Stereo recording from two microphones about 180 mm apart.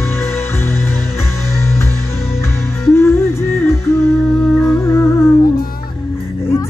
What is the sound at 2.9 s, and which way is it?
Music, 15° left (ahead or behind).